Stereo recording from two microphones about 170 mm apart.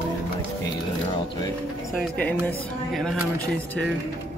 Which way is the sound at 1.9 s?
5° left (ahead or behind).